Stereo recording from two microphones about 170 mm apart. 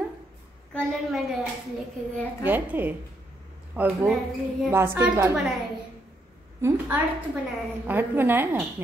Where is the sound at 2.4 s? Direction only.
10° right (ahead or behind).